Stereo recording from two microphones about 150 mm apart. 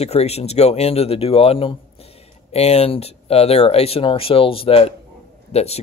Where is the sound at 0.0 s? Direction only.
45° left (ahead or behind).